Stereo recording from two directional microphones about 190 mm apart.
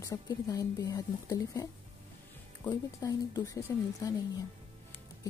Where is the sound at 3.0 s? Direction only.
20° left (ahead or behind).